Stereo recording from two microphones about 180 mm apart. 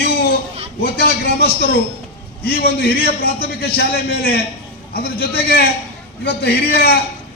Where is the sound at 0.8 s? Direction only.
60° left (ahead or behind).